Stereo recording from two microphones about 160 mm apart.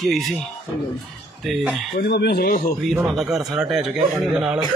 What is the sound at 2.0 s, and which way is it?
Speech, 85° left.